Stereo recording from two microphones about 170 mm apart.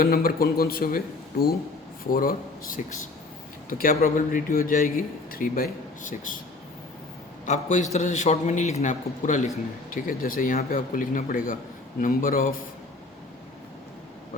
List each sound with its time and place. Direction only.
0.0 s a man's voice: 60° left (ahead or behind)
7.4 s a man's voice: 45° left (ahead or behind)